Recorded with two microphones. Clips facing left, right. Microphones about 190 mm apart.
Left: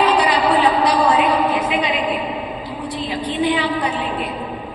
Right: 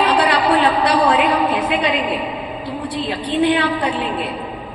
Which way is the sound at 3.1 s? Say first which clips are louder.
Right 3 dB; 65° right (ahead or behind).